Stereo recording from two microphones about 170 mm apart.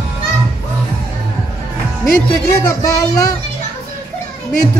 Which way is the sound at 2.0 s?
20° left (ahead or behind).